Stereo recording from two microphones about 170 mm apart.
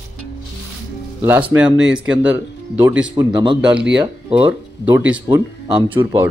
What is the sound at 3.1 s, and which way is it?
Speech, 25° right (ahead or behind).